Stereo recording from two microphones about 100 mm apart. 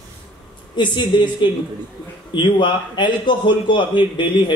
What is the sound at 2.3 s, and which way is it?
A man's voice, 50° left (ahead or behind).